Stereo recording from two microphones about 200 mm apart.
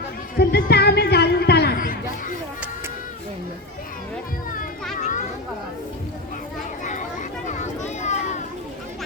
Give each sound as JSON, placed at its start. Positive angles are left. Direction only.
{"t": 0.3, "sound": "music", "side_deg": 55}
{"t": 4.9, "sound": "a sound", "side_deg": 35}
{"t": 6.8, "sound": "children playing", "side_deg": 40}